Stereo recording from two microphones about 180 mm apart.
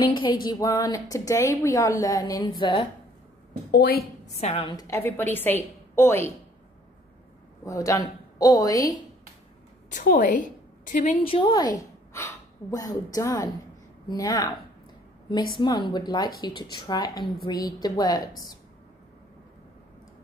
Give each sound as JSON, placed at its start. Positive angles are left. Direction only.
{"t": 0.0, "sound": "a woman's voice", "side_deg": 25}
{"t": 3.7, "sound": "a woman's voice", "side_deg": 55}
{"t": 4.4, "sound": "a woman's voice", "side_deg": 30}
{"t": 4.8, "sound": "a woman's voice", "side_deg": 15}
{"t": 7.6, "sound": "a woman's voice", "side_deg": 15}
{"t": 9.8, "sound": "a woman's voice", "side_deg": 45}
{"t": 15.5, "sound": "a woman's voice", "side_deg": 25}